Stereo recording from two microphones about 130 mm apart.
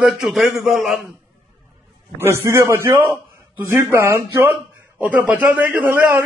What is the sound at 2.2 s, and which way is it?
A man's voice, 20° right (ahead or behind).